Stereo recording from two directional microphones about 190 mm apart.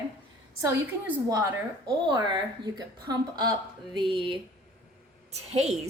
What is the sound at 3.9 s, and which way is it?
Speech, 25° right (ahead or behind).